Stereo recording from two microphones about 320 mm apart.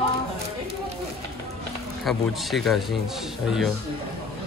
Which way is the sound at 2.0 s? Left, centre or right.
Centre.